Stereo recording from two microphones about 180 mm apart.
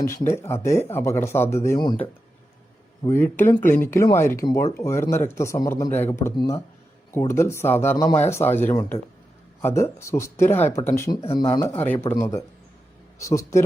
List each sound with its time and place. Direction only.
0.0 s speech: 15° left (ahead or behind)
3.1 s speech: 10° left (ahead or behind)
6.3 s speech: 25° left (ahead or behind)